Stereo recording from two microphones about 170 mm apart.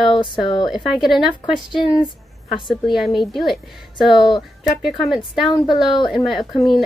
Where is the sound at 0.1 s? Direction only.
30° left (ahead or behind).